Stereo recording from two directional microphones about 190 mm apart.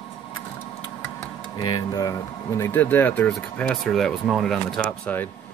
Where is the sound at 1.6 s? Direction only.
20° left (ahead or behind).